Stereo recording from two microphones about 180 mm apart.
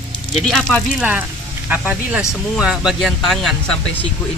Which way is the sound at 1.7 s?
5° right (ahead or behind).